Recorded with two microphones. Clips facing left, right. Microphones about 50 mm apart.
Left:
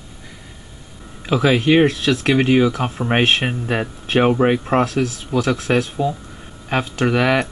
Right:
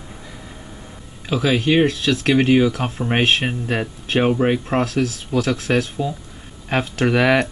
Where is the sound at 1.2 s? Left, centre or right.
Centre.